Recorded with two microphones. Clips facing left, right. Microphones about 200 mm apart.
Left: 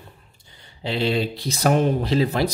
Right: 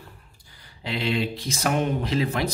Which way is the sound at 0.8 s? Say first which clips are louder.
Left 3 dB; 30° left (ahead or behind).